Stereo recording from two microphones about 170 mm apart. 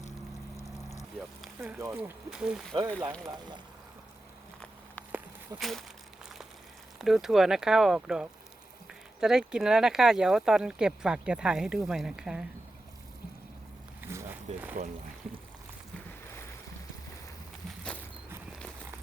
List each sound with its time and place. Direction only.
0.5 s a sound: 20° left (ahead or behind)
1.5 s speech: 15° right (ahead or behind)
3.2 s speech: 25° right (ahead or behind)
5.5 s speech: centre (ahead or behind)
7.0 s speech: centre (ahead or behind)
14.0 s a sound: 15° right (ahead or behind)
17.7 s vehicle: 5° left (ahead or behind)